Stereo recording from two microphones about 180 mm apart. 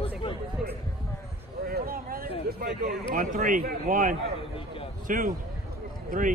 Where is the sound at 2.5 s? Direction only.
50° right (ahead or behind).